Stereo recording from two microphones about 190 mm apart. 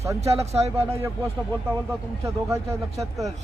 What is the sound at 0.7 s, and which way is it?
Speech, 10° right (ahead or behind).